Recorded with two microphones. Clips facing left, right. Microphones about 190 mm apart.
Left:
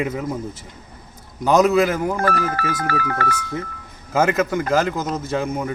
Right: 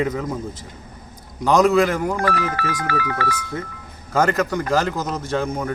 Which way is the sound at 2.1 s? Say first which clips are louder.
Left 1 dB; 45° left (ahead or behind).